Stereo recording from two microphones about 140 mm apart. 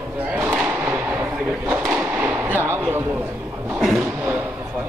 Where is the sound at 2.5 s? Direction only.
15° right (ahead or behind).